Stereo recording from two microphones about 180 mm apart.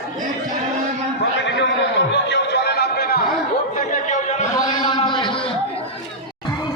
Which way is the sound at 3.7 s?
45° left (ahead or behind).